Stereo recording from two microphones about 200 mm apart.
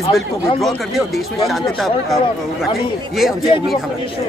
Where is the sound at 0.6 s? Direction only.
Centre (ahead or behind).